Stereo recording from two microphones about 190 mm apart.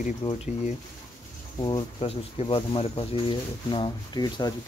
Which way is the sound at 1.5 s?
25° left (ahead or behind).